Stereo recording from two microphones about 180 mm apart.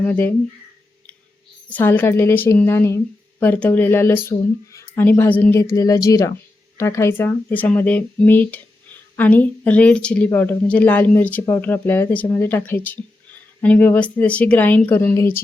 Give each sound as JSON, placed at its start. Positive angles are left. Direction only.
{"t": 0.0, "sound": "a woman's voice", "side_deg": 10}
{"t": 1.7, "sound": "a woman's voice", "side_deg": 10}